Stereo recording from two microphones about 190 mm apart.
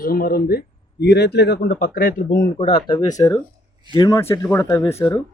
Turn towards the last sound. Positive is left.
turn(degrees=15)  # may be behind; listen again after turning